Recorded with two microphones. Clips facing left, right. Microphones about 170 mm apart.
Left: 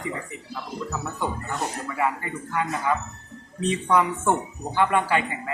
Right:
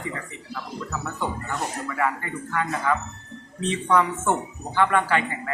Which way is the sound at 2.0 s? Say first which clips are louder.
Even; 15° left (ahead or behind).